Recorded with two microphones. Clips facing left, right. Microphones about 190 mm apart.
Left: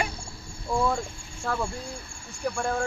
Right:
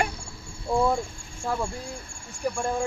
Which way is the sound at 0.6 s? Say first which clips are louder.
Right 3 dB; 25° right (ahead or behind).